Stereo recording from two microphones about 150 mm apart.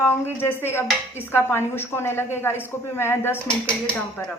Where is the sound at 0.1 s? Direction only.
15° left (ahead or behind).